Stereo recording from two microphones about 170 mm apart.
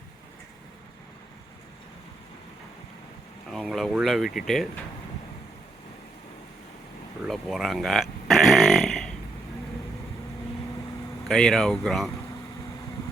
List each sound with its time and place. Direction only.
3.5 s speech: centre (ahead or behind)
7.3 s a sound: centre (ahead or behind)
11.3 s speech: 5° left (ahead or behind)